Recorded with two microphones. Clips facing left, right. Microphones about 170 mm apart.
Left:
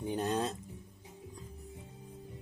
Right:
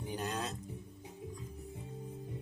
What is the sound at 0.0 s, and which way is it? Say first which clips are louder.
Music: left 5 dB; 25° left (ahead or behind).